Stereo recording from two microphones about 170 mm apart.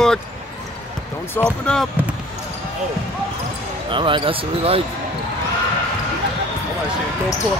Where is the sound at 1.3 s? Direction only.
5° left (ahead or behind).